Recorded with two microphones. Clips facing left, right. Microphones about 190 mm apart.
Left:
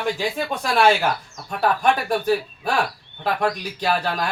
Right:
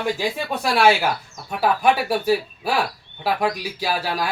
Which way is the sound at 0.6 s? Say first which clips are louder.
Right 1 dB; 5° right (ahead or behind).